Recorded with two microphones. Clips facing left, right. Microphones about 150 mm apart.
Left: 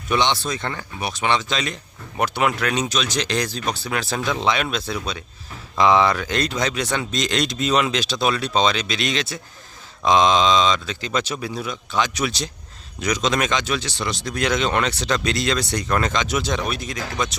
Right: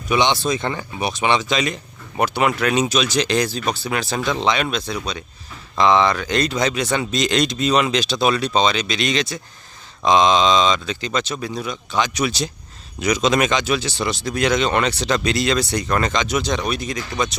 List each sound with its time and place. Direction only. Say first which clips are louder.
0.1 s speech: right 3 dB; 15° right (ahead or behind)